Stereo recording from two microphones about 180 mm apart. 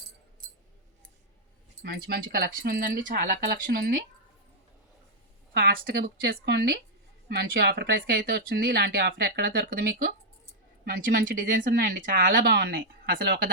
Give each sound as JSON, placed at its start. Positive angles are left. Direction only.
{"t": 1.8, "sound": "speech", "side_deg": -60}
{"t": 5.5, "sound": "speech", "side_deg": -60}